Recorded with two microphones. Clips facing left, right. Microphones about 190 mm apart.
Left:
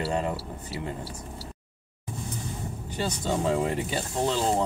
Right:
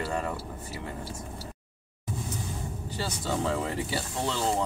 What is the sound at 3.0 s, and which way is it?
Speech, 20° left (ahead or behind).